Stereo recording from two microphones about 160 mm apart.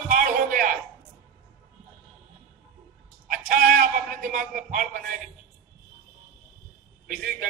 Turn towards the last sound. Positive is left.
turn(degrees=-65)  # may be behind; listen again after turning